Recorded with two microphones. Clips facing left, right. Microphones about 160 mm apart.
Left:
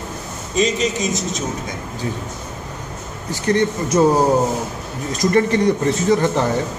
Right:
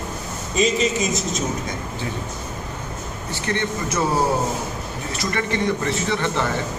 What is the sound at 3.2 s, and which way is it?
Speech, 40° left (ahead or behind).